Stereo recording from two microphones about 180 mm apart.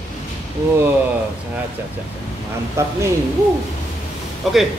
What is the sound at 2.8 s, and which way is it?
Speech, 15° right (ahead or behind).